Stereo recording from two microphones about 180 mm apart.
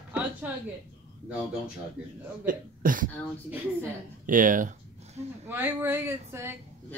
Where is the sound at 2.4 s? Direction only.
50° right (ahead or behind).